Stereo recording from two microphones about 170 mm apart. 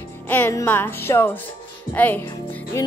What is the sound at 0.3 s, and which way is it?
Speech, 10° left (ahead or behind).